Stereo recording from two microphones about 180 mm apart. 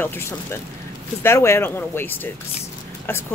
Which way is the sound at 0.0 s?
15° left (ahead or behind).